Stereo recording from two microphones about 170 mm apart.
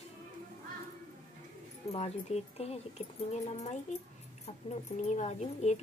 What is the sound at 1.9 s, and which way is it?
Speech, 35° left (ahead or behind).